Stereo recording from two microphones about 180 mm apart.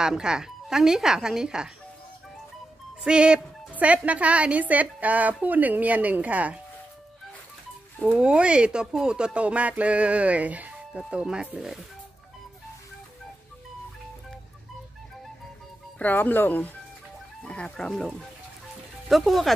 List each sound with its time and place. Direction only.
0.0 s speech: 5° right (ahead or behind)
3.0 s a woman's voice: 5° right (ahead or behind)
8.1 s speech: 5° right (ahead or behind)
16.0 s speech: 10° left (ahead or behind)